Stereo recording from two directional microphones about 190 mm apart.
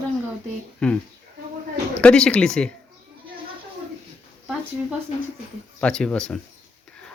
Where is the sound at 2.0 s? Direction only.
5° left (ahead or behind).